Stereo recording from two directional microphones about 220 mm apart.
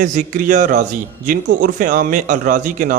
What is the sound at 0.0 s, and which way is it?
A man's voice, 35° right (ahead or behind).